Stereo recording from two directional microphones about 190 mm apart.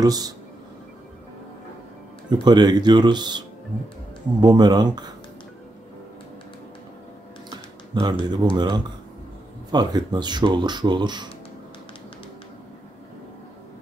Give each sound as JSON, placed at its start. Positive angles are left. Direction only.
{"t": 0.0, "sound": "speech", "side_deg": -20}
{"t": 2.4, "sound": "speech", "side_deg": -20}
{"t": 7.9, "sound": "speech", "side_deg": -20}